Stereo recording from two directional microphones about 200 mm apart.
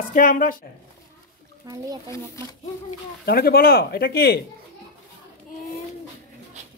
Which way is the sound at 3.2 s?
50° left (ahead or behind).